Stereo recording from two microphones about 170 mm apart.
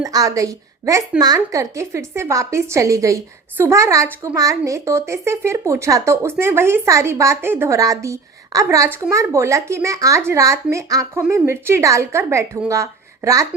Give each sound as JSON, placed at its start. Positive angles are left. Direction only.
{"t": 0.0, "sound": "a woman's voice", "side_deg": -20}